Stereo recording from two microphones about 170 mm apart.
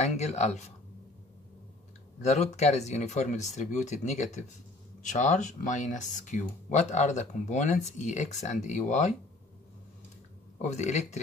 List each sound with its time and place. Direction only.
0.0 s speech: 40° left (ahead or behind)
2.2 s speech: 40° left (ahead or behind)
10.6 s speech: 45° left (ahead or behind)